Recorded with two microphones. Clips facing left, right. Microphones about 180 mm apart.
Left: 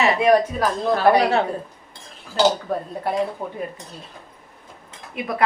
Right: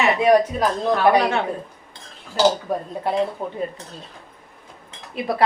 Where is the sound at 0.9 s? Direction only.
35° left (ahead or behind).